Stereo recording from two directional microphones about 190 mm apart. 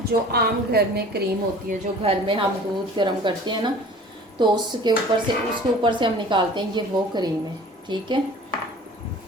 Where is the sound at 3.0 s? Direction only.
25° right (ahead or behind).